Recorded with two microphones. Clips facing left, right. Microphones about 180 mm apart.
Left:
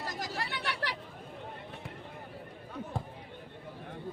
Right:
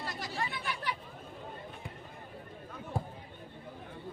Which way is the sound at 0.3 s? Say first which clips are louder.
Left 1 dB; 75° left (ahead or behind).